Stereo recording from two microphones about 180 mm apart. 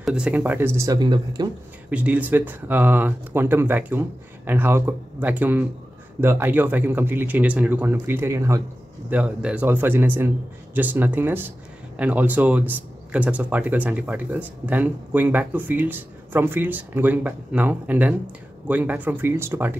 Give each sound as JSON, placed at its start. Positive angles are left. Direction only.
{"t": 0.0, "sound": "speech", "side_deg": -5}
{"t": 1.9, "sound": "speech", "side_deg": -10}